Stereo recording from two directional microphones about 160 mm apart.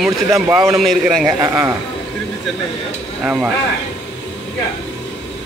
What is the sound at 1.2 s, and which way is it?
Speech, 20° right (ahead or behind).